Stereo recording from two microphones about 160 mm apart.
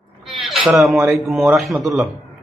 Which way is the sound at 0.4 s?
Centre (ahead or behind).